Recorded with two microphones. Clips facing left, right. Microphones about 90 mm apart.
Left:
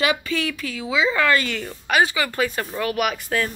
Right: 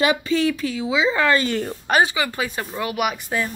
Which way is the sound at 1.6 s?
35° right (ahead or behind).